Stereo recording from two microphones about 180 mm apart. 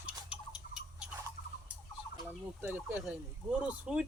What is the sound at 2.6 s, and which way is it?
Speech, 10° right (ahead or behind).